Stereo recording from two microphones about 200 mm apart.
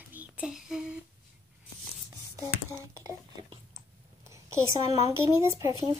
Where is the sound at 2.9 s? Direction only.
20° right (ahead or behind).